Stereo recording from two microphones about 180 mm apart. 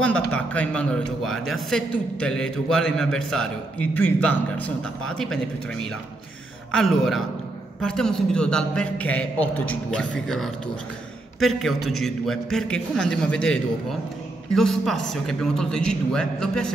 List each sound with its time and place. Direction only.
0.0 s a man's voice: 5° left (ahead or behind)
6.7 s a man's voice: centre (ahead or behind)